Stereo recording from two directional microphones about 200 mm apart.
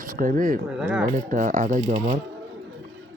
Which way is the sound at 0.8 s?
5° right (ahead or behind).